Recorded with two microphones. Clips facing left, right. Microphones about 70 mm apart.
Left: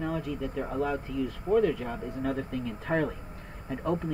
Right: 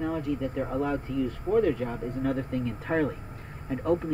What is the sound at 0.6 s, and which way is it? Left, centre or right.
Speech, centre.